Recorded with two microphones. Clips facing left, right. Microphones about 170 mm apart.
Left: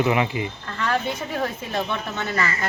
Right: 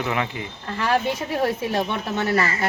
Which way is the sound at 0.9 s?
10° right (ahead or behind).